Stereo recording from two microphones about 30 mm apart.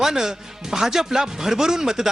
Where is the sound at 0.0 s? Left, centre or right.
Centre.